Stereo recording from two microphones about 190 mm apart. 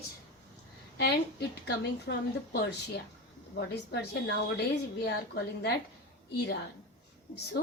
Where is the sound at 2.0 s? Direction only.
60° left (ahead or behind).